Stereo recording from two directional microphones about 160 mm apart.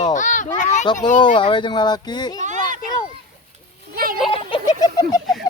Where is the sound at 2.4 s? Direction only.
50° right (ahead or behind).